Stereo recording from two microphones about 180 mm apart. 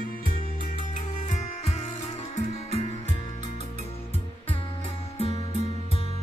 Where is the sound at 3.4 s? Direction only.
40° right (ahead or behind).